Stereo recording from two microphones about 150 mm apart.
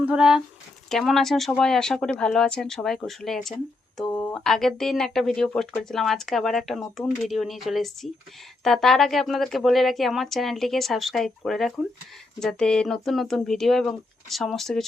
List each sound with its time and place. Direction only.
0.0 s speech: 5° right (ahead or behind)